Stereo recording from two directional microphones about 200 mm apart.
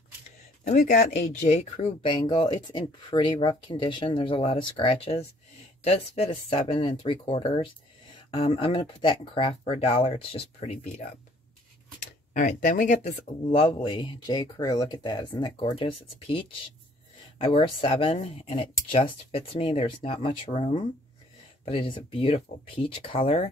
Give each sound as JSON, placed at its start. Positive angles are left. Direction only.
{"t": 0.7, "sound": "speech", "side_deg": 40}